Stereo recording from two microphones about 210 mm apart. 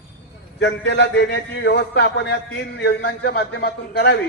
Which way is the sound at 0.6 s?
55° left (ahead or behind).